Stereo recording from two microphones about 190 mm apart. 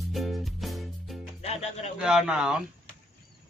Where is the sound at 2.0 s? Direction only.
5° right (ahead or behind).